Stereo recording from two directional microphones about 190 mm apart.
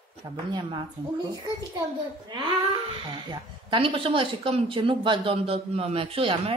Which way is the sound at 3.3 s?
25° right (ahead or behind).